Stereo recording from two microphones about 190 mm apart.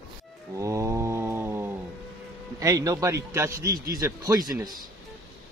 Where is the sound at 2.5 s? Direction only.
20° right (ahead or behind).